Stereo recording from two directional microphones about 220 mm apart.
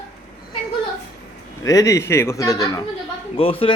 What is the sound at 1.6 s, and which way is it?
A man's voice, 15° left (ahead or behind).